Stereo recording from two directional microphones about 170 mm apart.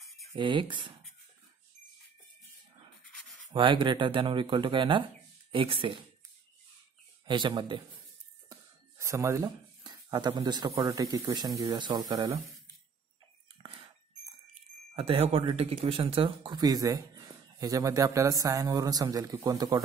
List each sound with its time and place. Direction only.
0.4 s speech: 30° right (ahead or behind)
3.5 s speech: 30° right (ahead or behind)
7.2 s speech: 25° right (ahead or behind)
8.5 s a sound: 15° right (ahead or behind)
10.8 s speech: 20° right (ahead or behind)
13.6 s a sound: 35° right (ahead or behind)
15.0 s speech: 35° right (ahead or behind)